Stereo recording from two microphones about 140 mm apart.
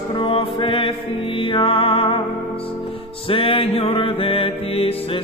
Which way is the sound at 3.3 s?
40° left (ahead or behind).